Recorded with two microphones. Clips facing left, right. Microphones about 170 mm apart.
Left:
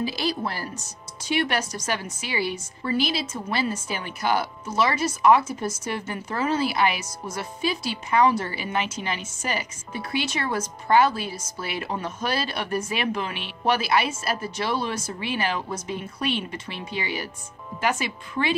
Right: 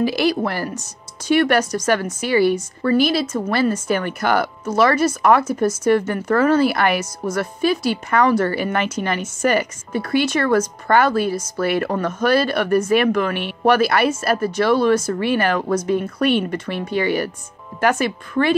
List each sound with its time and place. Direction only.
0.0 s speech: 70° right (ahead or behind)
1.2 s a woman's voice: 50° right (ahead or behind)
15.0 s a woman's voice: 65° right (ahead or behind)